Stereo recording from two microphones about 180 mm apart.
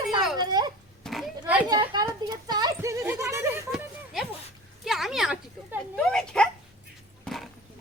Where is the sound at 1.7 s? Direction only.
25° right (ahead or behind).